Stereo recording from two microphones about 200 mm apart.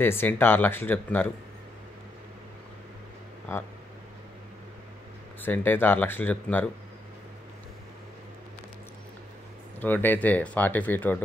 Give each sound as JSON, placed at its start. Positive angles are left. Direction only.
{"t": 0.0, "sound": "speech", "side_deg": 10}
{"t": 3.5, "sound": "speech", "side_deg": 10}
{"t": 5.4, "sound": "speech", "side_deg": 10}
{"t": 9.8, "sound": "speech", "side_deg": 10}